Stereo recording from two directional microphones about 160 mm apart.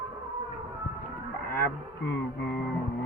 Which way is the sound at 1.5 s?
75° left (ahead or behind).